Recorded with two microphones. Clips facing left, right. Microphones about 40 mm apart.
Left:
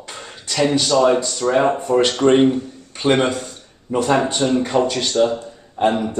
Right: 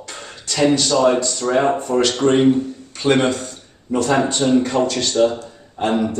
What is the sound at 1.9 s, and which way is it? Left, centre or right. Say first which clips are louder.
A man's voice: left 3 dB; left.